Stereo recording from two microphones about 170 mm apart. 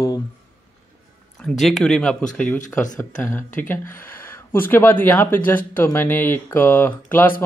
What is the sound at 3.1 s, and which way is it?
Speech, 15° left (ahead or behind).